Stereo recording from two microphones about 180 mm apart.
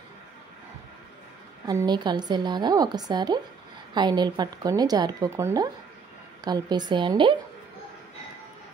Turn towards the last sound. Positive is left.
turn(degrees=-25)  # may be behind; listen again after turning